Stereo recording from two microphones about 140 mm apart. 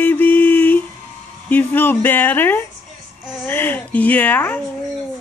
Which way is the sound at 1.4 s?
15° left (ahead or behind).